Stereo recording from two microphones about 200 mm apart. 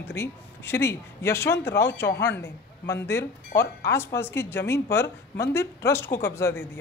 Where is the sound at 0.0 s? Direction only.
10° left (ahead or behind).